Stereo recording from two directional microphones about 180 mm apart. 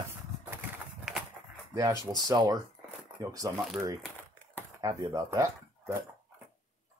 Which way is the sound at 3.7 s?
15° right (ahead or behind).